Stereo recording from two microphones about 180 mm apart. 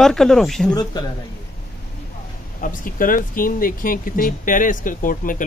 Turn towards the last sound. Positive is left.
turn(degrees=50)  # may be behind; listen again after turning